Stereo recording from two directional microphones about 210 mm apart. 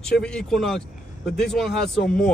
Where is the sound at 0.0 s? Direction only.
5° left (ahead or behind).